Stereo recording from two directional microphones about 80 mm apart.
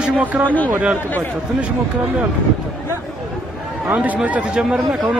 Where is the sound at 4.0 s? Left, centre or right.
Centre.